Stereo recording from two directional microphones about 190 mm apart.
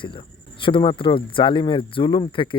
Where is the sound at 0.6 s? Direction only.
25° left (ahead or behind).